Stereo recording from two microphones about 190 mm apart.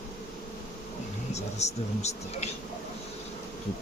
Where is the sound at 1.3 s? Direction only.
35° left (ahead or behind).